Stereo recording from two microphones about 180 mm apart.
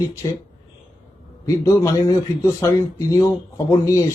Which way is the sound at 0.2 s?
20° left (ahead or behind).